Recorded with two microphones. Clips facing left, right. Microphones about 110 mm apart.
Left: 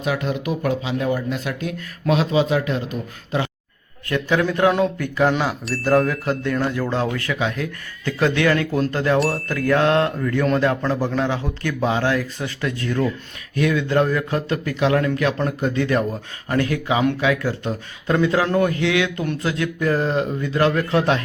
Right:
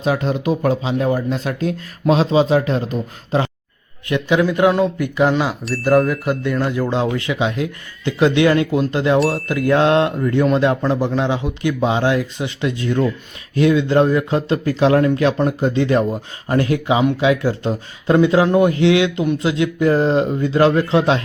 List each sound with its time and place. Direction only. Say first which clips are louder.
0.0 s speech: right 4 dB; 30° right (ahead or behind)
4.1 s speech: right 3 dB; 15° right (ahead or behind)
4.9 s speech: right 2 dB; 15° right (ahead or behind)
5.3 s speech: right 3 dB; centre (ahead or behind)
9.1 s speech: right 3 dB; centre (ahead or behind)
9.5 s speech: right 3 dB; 20° right (ahead or behind)